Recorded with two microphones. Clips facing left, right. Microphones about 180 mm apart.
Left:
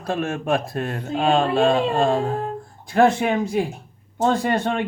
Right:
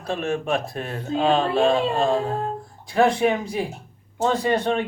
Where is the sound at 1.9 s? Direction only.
55° left (ahead or behind).